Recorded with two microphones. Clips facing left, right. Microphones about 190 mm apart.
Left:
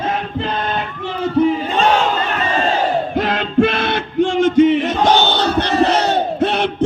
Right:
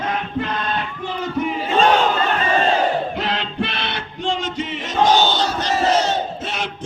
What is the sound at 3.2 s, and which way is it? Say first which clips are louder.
Music: left 8 dB; 50° left (ahead or behind).